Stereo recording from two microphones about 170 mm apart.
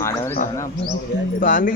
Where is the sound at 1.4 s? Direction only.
50° left (ahead or behind).